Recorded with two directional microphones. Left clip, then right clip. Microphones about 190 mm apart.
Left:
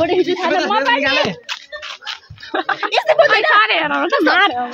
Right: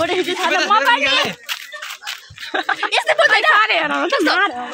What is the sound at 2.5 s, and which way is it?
Snicker, 35° right (ahead or behind).